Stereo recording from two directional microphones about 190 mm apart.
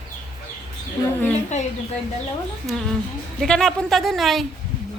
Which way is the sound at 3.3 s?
5° left (ahead or behind).